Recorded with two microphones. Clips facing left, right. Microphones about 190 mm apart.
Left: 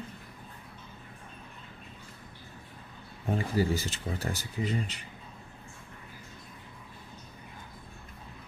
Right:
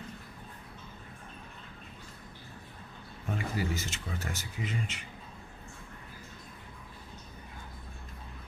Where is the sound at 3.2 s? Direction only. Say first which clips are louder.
Left 6 dB; 30° left (ahead or behind).